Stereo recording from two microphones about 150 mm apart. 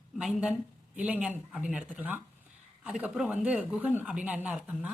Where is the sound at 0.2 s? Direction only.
5° right (ahead or behind).